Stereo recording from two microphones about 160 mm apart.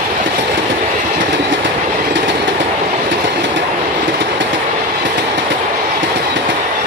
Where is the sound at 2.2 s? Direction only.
90° right.